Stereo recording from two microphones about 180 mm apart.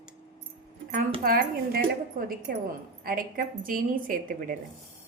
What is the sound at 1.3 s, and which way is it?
A woman's voice, 55° right (ahead or behind).